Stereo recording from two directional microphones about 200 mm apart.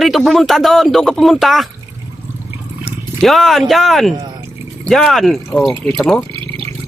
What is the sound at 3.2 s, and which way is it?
Speech, centre (ahead or behind).